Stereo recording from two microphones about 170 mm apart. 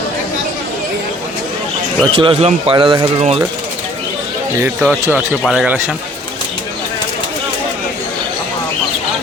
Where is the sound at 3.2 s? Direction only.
40° right (ahead or behind).